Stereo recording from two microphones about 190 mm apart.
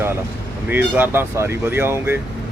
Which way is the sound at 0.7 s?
10° right (ahead or behind).